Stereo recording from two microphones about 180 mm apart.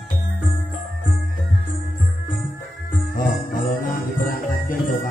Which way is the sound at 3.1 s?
50° left (ahead or behind).